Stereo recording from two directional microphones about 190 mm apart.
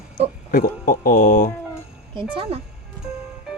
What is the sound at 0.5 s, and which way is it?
Speech, 50° left (ahead or behind).